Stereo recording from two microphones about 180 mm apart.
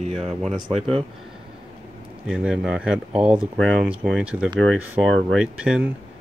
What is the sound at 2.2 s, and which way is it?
Speech, 5° right (ahead or behind).